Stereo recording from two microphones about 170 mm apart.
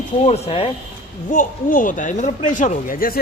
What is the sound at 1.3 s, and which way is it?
Speech, 50° left (ahead or behind).